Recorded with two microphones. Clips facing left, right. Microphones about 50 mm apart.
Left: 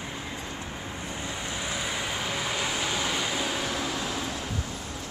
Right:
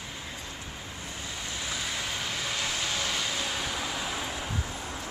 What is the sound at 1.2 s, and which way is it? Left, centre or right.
Vehicle, left.